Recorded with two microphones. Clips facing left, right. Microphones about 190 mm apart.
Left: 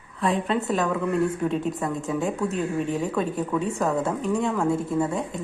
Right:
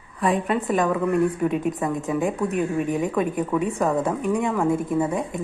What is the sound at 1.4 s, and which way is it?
A woman's voice, 10° right (ahead or behind).